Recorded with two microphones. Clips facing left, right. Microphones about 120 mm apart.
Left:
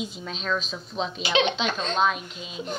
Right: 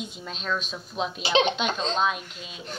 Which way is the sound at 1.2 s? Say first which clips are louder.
Right 1 dB; 30° right (ahead or behind).